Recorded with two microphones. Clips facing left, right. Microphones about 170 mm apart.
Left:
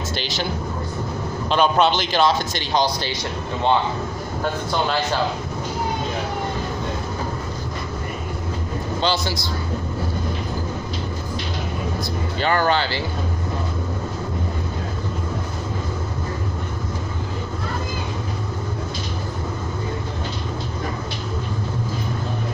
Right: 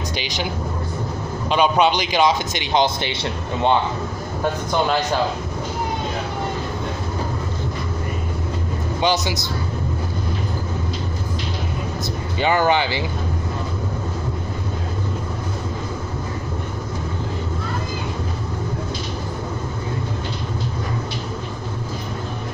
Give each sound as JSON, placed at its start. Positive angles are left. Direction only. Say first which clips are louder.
{"t": 1.5, "sound": "speech", "louder": "right 1 dB", "side_deg": -10}
{"t": 9.0, "sound": "a man's voice", "louder": "right 3 dB", "side_deg": -20}
{"t": 12.4, "sound": "speech", "louder": "right 2 dB", "side_deg": -15}